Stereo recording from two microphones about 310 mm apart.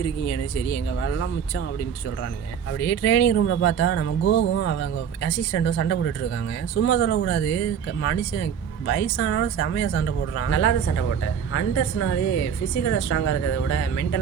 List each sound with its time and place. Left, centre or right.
0.3 s speech: left
1.1 s speech: left
2.8 s speech: left
4.6 s speech: left
5.6 s speech: left